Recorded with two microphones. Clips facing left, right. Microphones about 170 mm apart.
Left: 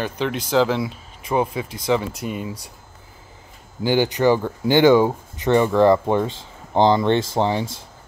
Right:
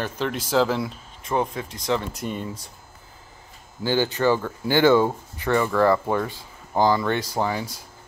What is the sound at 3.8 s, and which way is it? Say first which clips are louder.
Speech: left 4 dB; 15° left (ahead or behind).